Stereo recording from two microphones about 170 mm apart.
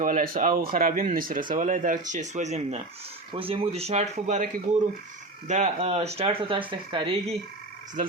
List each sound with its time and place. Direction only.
0.0 s speech: 55° right (ahead or behind)
5.5 s speech: 40° right (ahead or behind)